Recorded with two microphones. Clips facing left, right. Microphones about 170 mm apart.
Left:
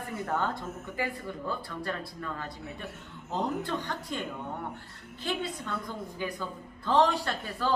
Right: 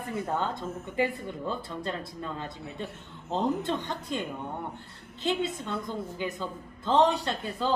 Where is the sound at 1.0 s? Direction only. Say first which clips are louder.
Right 5 dB; 20° right (ahead or behind).